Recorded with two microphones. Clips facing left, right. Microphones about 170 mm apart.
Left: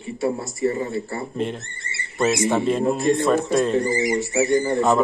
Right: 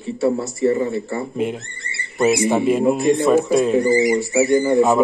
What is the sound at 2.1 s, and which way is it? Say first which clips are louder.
A man's voice: right 3 dB; 10° right (ahead or behind).